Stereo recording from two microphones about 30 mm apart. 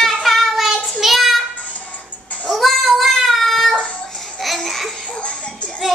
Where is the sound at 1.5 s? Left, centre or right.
Left.